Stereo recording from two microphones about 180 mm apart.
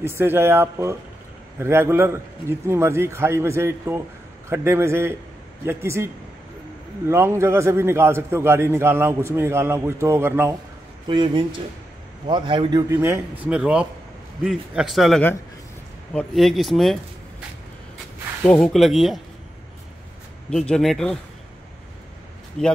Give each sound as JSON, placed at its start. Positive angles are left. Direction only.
{"t": 0.0, "sound": "a man's voice", "side_deg": -15}
{"t": 7.1, "sound": "a man's voice", "side_deg": -15}
{"t": 11.1, "sound": "a man's voice", "side_deg": -25}
{"t": 13.0, "sound": "a man's voice", "side_deg": -10}
{"t": 18.4, "sound": "speech", "side_deg": 5}
{"t": 20.4, "sound": "speech", "side_deg": 5}
{"t": 22.6, "sound": "speech", "side_deg": 5}